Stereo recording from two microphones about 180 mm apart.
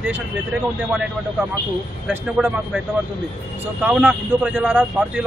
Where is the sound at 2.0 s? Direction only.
5° right (ahead or behind).